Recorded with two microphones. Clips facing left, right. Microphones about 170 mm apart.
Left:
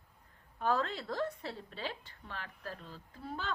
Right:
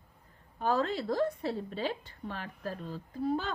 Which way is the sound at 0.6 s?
35° right (ahead or behind).